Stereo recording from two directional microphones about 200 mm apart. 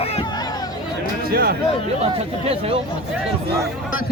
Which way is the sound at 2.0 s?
30° right (ahead or behind).